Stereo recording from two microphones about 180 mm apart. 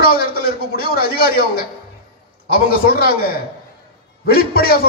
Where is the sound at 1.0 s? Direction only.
55° left (ahead or behind).